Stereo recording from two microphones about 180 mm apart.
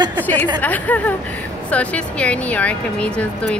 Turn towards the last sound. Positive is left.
turn(degrees=5)  # may be behind; listen again after turning